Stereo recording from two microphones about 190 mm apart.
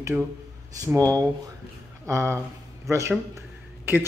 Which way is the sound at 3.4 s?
10° right (ahead or behind).